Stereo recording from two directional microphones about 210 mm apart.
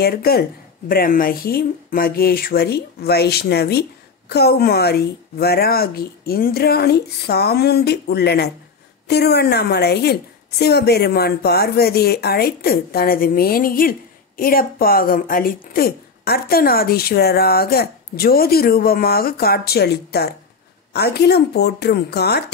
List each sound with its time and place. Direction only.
0.0 s speech: 45° left (ahead or behind)